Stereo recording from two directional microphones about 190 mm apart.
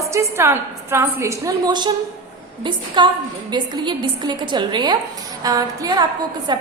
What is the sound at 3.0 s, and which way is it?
A woman's voice, 25° right (ahead or behind).